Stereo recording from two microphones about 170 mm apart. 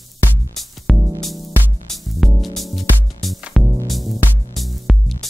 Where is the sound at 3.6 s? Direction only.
20° right (ahead or behind).